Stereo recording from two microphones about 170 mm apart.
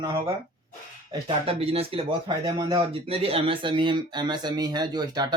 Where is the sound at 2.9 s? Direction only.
35° right (ahead or behind).